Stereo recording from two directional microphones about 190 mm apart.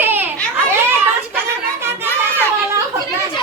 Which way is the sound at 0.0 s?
10° right (ahead or behind).